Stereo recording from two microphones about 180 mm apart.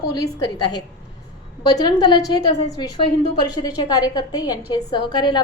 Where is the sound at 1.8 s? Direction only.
25° left (ahead or behind).